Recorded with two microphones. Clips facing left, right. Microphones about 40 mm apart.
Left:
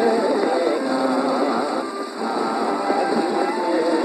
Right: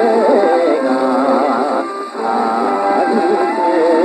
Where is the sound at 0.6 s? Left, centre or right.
Right.